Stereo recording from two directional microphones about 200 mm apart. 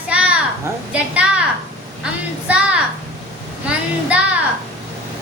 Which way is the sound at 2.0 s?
5° right (ahead or behind).